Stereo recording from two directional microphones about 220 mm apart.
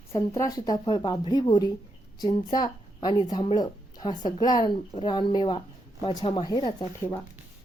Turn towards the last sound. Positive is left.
turn(degrees=15)  # may be behind; listen again after turning